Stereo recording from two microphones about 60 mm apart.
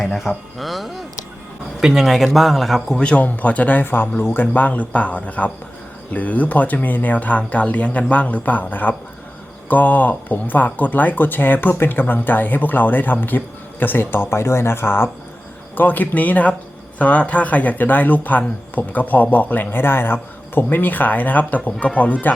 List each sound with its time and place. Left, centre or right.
0.6 s speech: centre
2.9 s speech: centre; by 15.1 s left
15.7 s speech: left